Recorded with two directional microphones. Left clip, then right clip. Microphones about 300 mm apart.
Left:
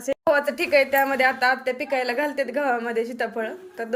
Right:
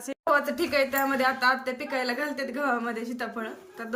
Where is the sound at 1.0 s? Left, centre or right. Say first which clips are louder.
Left 4 dB; centre.